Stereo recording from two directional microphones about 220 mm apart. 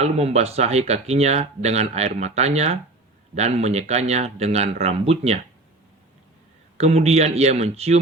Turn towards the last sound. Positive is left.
turn(degrees=-30)  # may be behind; listen again after turning